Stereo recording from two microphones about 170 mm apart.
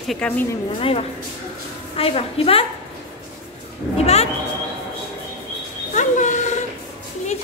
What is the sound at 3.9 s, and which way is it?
Speech, 40° left (ahead or behind).